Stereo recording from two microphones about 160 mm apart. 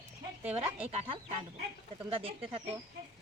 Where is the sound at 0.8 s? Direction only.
35° right (ahead or behind).